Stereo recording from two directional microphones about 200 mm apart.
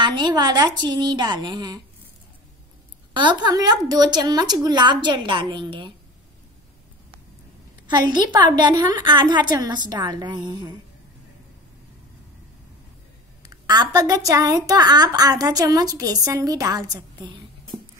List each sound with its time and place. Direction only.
0.0 s a woman's voice: 25° right (ahead or behind)
3.1 s a woman's voice: 20° right (ahead or behind)
7.8 s a woman's voice: 20° right (ahead or behind)
13.4 s a woman's voice: 20° right (ahead or behind)